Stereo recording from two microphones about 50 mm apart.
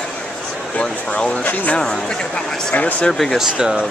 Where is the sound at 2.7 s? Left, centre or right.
Left.